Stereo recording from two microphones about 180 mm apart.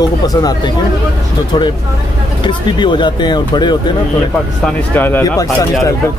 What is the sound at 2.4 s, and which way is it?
Speech, 25° left (ahead or behind).